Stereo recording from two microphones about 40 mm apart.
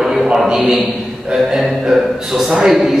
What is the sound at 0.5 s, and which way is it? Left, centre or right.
Speech, centre.